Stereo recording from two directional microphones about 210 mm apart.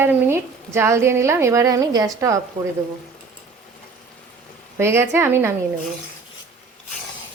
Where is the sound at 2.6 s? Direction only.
35° right (ahead or behind).